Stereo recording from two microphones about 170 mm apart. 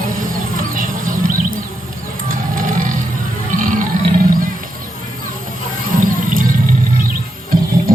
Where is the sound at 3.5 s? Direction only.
50° right (ahead or behind).